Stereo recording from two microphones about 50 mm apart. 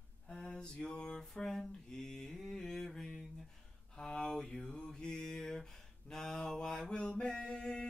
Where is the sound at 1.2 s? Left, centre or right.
Centre.